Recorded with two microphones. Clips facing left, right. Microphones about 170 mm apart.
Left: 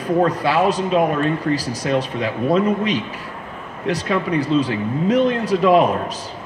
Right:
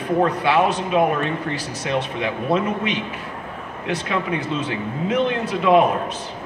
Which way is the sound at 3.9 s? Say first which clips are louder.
Left 3 dB; 35° left (ahead or behind).